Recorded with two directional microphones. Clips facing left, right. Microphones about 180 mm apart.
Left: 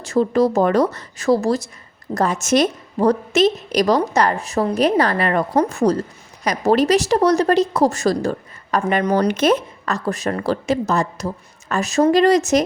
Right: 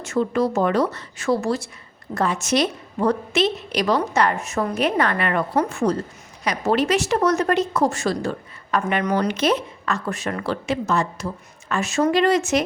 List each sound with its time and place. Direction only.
0.0 s speech: 35° left (ahead or behind)